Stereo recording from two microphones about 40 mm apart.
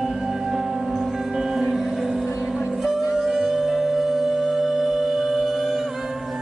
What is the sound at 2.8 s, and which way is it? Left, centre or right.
Music, centre.